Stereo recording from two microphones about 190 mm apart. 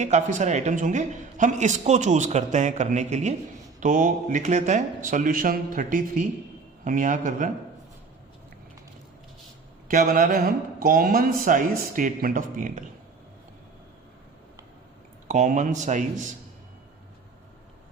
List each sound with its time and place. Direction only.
0.0 s a man's voice: 40° right (ahead or behind)
9.9 s speech: 45° right (ahead or behind)
15.3 s a man's voice: 40° right (ahead or behind)